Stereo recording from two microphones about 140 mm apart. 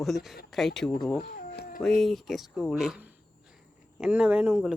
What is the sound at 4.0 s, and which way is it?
Speech, 10° right (ahead or behind).